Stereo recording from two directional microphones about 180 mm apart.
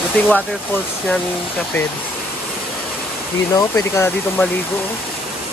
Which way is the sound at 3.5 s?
20° left (ahead or behind).